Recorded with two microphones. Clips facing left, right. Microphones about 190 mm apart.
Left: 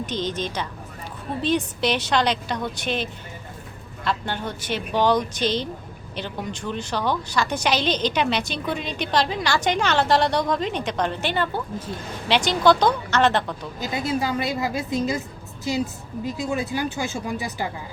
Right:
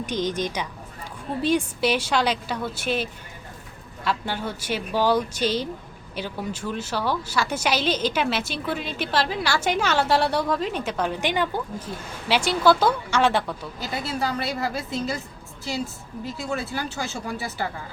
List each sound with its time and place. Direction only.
0.0 s a woman's voice: 10° right (ahead or behind)
13.7 s speech: 15° left (ahead or behind)
16.2 s speech: 15° left (ahead or behind)